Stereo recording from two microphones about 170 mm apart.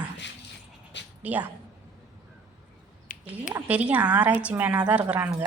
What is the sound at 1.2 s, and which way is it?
Speech, 10° right (ahead or behind).